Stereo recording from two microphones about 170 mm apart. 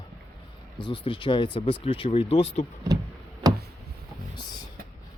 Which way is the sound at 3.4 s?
20° right (ahead or behind).